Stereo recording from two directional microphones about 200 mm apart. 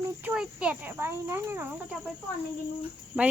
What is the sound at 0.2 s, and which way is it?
Speech, 5° right (ahead or behind).